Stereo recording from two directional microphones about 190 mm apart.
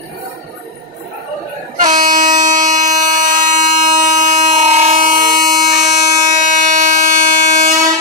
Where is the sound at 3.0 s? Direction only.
45° right (ahead or behind).